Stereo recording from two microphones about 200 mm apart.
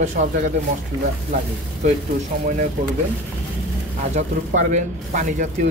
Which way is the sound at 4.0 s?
35° right (ahead or behind).